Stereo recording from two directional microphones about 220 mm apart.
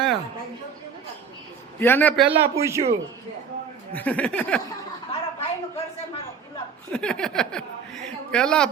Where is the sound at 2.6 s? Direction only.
15° right (ahead or behind).